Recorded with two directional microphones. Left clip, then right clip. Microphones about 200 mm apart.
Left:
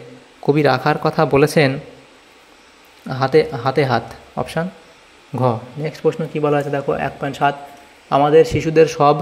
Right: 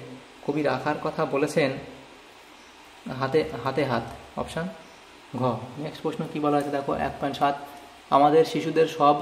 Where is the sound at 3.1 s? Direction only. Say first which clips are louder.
Left 10 dB; 35° left (ahead or behind).